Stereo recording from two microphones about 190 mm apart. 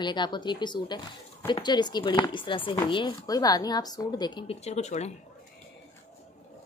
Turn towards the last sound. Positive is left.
turn(degrees=35)  # may be behind; listen again after turning